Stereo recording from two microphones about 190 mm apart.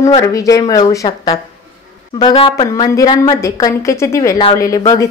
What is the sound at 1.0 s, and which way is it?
A woman's voice, 30° left (ahead or behind).